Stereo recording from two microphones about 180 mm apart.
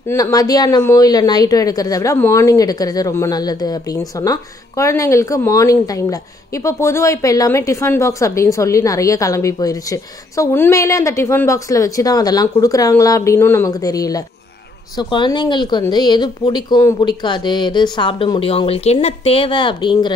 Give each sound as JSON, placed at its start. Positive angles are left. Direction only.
{"t": 0.1, "sound": "speech", "side_deg": 20}